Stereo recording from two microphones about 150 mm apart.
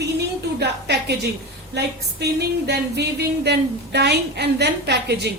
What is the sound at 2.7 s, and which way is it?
A woman's voice, 90° right.